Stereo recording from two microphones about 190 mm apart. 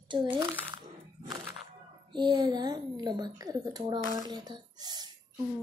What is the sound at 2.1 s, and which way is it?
A woman's voice, 25° right (ahead or behind).